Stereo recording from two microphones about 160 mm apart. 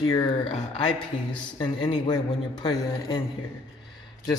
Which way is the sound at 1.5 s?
30° left (ahead or behind).